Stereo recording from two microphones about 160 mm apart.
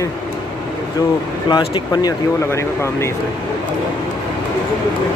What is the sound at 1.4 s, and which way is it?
Speech, 25° left (ahead or behind).